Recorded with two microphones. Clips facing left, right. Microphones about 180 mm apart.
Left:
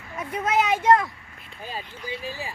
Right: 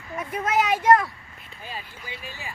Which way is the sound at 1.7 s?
35° left (ahead or behind).